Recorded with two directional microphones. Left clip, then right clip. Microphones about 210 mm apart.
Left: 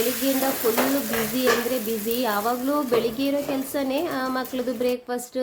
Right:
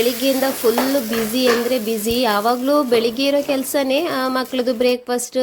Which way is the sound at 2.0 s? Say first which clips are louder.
Right 7 dB; 30° right (ahead or behind).